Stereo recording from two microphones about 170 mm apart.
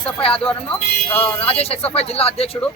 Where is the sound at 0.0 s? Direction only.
35° left (ahead or behind).